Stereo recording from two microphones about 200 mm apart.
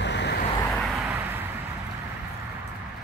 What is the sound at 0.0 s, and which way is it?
Vehicle, 60° left (ahead or behind).